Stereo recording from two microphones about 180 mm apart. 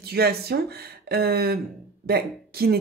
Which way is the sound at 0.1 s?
60° right (ahead or behind).